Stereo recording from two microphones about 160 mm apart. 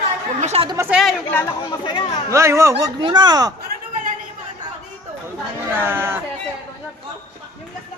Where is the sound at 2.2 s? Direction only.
20° right (ahead or behind).